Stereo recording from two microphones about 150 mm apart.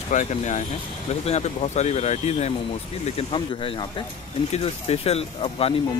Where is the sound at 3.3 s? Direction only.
35° left (ahead or behind).